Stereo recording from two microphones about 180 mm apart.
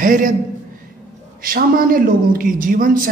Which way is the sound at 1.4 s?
50° right (ahead or behind).